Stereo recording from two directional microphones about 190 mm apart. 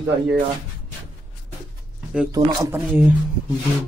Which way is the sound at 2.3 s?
15° right (ahead or behind).